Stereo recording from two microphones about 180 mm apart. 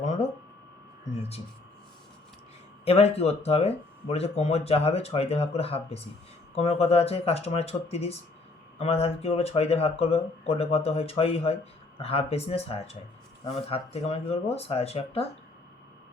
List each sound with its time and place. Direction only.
2.8 s speech: 35° left (ahead or behind)